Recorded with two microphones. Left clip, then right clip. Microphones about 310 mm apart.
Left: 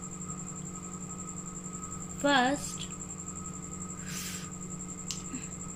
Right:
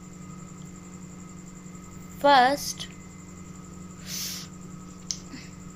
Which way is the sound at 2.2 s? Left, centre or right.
Centre.